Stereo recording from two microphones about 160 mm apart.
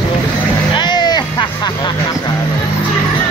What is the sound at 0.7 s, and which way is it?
Vehicle, 25° left (ahead or behind).